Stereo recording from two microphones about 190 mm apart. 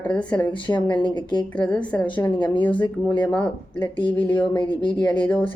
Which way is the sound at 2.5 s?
25° left (ahead or behind).